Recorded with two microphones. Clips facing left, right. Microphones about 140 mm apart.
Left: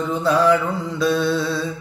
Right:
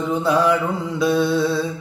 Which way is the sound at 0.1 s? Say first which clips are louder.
Left 1 dB; 15° right (ahead or behind).